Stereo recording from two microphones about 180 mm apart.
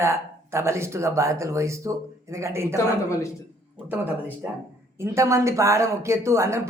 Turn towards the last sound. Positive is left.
turn(degrees=-15)  # may be behind; listen again after turning